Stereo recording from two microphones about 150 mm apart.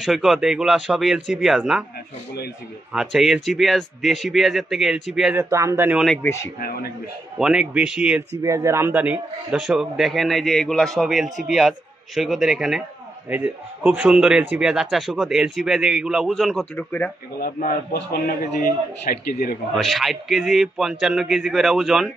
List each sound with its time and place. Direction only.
0.0 s a man's voice: 5° right (ahead or behind)
2.9 s a man's voice: 5° right (ahead or behind)
5.4 s speech: 20° right (ahead or behind)
6.2 s a man's voice: 20° left (ahead or behind)
6.6 s a man's voice: 90° left
7.3 s a man's voice: 5° right (ahead or behind)
8.4 s a man's voice: 20° right (ahead or behind); by 16.6 s centre (ahead or behind)
16.7 s speech: 10° left (ahead or behind)
17.4 s a man's voice: 65° left (ahead or behind)
19.8 s a man's voice: centre (ahead or behind)